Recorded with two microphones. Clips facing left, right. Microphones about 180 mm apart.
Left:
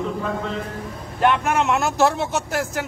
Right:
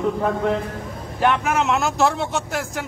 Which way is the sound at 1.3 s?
Centre (ahead or behind).